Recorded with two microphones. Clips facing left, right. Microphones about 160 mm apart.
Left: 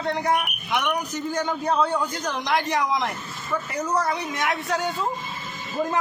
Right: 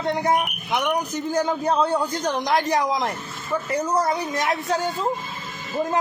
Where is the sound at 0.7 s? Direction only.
30° right (ahead or behind).